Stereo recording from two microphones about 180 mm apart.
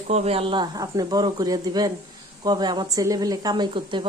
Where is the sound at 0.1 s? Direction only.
35° right (ahead or behind).